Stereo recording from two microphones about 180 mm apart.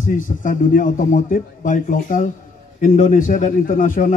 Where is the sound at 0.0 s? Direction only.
45° left (ahead or behind).